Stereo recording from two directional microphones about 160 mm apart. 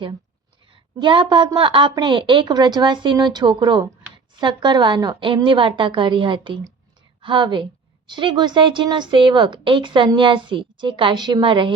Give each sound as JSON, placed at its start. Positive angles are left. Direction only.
{"t": 0.9, "sound": "a woman's voice", "side_deg": -30}